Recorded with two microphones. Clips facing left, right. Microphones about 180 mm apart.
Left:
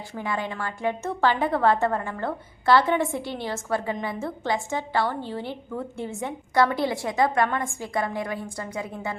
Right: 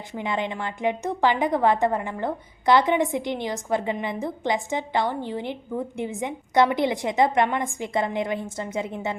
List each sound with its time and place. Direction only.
0.1 s a woman's voice: 20° right (ahead or behind)